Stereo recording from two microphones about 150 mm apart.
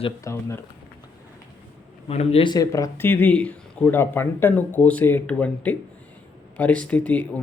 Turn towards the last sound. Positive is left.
turn(degrees=10)  # may be behind; listen again after turning